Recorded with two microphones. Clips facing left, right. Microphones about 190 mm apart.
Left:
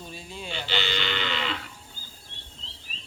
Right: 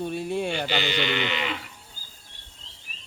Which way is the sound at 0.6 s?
50° right (ahead or behind).